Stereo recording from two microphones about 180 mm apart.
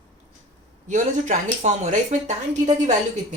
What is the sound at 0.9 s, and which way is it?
Speech, 45° right (ahead or behind).